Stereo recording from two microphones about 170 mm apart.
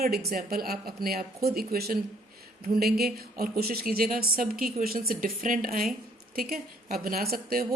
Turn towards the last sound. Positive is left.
turn(degrees=-65)  # may be behind; listen again after turning